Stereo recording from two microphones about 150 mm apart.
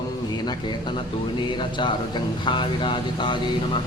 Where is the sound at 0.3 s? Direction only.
30° left (ahead or behind).